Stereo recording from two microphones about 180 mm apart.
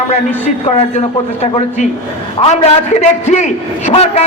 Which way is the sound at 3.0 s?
40° left (ahead or behind).